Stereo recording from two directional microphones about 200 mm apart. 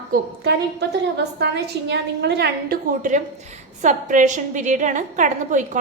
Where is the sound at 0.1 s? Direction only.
55° right (ahead or behind).